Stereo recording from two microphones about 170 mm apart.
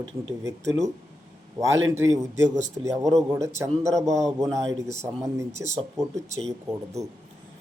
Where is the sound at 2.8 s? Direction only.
20° right (ahead or behind).